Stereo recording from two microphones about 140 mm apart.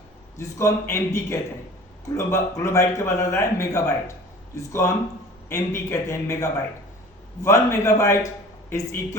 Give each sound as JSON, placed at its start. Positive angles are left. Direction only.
{"t": 0.3, "sound": "speech", "side_deg": 20}